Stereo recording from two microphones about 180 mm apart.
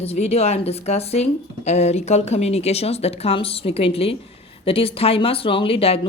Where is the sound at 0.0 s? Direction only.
35° left (ahead or behind).